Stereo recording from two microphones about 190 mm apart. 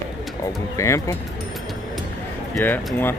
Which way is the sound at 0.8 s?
15° left (ahead or behind).